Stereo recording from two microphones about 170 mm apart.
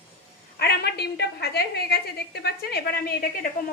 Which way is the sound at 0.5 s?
70° left (ahead or behind).